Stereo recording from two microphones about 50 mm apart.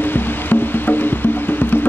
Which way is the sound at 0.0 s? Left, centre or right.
Left.